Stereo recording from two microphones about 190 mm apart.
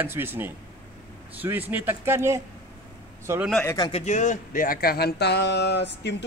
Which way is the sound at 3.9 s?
35° left (ahead or behind).